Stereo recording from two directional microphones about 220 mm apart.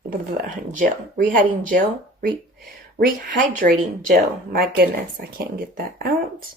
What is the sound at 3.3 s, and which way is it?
Speech, 40° right (ahead or behind).